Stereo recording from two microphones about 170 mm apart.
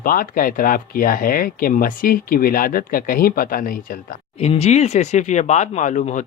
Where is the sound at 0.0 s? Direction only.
55° left (ahead or behind).